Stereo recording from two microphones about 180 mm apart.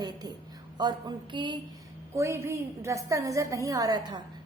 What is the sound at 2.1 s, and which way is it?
A woman's voice, 15° right (ahead or behind).